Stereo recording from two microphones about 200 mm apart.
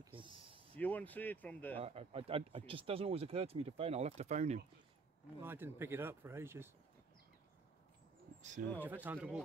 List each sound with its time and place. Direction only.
0.0 s a sound: 25° right (ahead or behind)
0.7 s speech: 10° left (ahead or behind)
1.8 s speech: 30° right (ahead or behind)
5.4 s speech: 10° right (ahead or behind)
8.4 s speech: 40° right (ahead or behind)
8.7 s speech: 10° right (ahead or behind)